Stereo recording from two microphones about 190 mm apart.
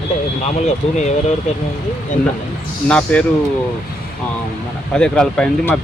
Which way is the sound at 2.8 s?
5° left (ahead or behind).